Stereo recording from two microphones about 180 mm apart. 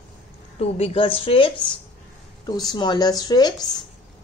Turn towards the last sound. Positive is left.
turn(degrees=20)  # may be behind; listen again after turning